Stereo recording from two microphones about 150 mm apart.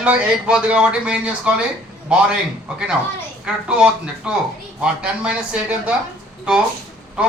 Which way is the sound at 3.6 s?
5° right (ahead or behind).